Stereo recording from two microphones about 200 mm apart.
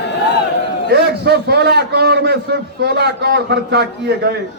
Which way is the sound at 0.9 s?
55° right (ahead or behind).